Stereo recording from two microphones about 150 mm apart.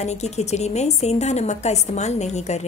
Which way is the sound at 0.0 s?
50° left (ahead or behind).